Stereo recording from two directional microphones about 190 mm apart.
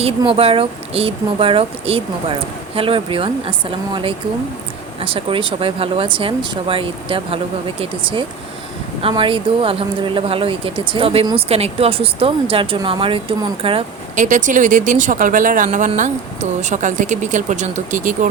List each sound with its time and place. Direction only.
0.2 s speech: 30° right (ahead or behind)
9.0 s speech: 30° right (ahead or behind)
14.3 s speech: 40° right (ahead or behind)